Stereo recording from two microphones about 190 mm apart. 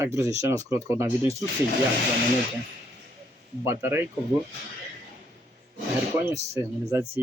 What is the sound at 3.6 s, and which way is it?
Speech, 10° right (ahead or behind).